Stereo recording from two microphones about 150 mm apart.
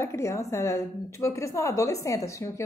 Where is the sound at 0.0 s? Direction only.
20° left (ahead or behind).